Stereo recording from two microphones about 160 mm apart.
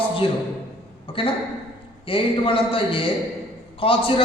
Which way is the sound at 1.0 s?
35° left (ahead or behind).